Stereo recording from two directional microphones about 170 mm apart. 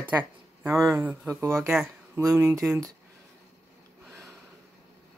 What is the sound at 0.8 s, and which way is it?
Speech, 15° right (ahead or behind).